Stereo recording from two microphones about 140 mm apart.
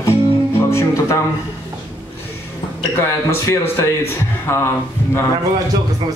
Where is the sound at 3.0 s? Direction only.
20° left (ahead or behind).